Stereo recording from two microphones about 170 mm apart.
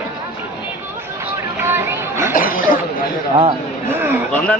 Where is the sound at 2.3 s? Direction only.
55° left (ahead or behind).